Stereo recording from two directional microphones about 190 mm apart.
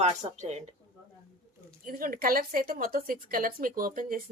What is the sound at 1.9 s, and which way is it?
Speech, 50° right (ahead or behind).